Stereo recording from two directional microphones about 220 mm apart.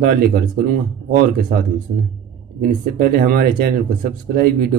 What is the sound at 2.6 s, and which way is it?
Speech, 40° right (ahead or behind).